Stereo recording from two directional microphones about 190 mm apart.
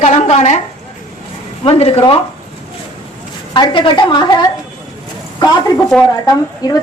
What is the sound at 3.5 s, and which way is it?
Speech, 25° left (ahead or behind).